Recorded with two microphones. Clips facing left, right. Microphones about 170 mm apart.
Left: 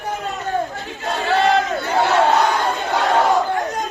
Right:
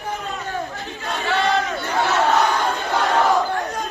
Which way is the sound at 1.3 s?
30° left (ahead or behind).